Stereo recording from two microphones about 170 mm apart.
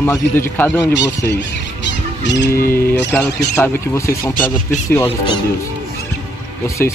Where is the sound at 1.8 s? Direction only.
90° left.